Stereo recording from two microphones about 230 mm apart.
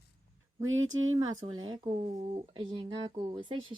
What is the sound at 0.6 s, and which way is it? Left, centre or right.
Speech, right.